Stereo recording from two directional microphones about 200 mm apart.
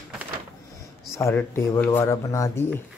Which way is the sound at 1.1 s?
15° left (ahead or behind).